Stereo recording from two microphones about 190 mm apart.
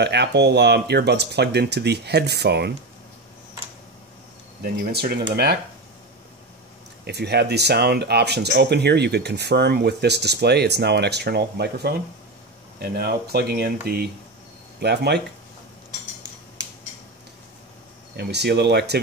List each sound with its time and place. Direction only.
0.0 s speech: 60° right (ahead or behind)
4.9 s speech: 55° right (ahead or behind)
7.1 s speech: 60° right (ahead or behind)
18.1 s speech: 60° right (ahead or behind)